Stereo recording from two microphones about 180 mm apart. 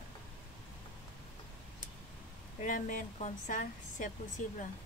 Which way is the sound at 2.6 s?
45° left (ahead or behind).